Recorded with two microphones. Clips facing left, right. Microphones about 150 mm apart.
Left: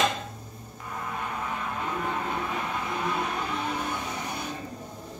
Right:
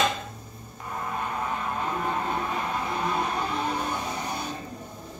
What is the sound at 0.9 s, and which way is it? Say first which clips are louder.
Vehicle: right 3 dB; 35° right (ahead or behind).